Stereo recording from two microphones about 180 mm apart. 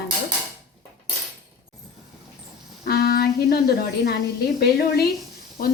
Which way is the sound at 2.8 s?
60° left (ahead or behind).